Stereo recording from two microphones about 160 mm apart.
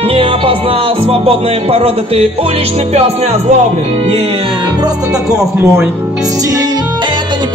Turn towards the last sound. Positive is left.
turn(degrees=-20)  # may be behind; listen again after turning